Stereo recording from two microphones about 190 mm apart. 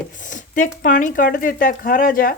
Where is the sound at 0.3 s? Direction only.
40° left (ahead or behind).